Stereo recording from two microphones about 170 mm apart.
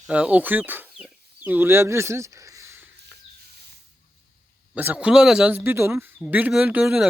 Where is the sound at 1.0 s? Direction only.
10° right (ahead or behind).